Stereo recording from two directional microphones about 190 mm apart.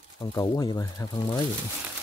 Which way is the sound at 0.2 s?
20° left (ahead or behind).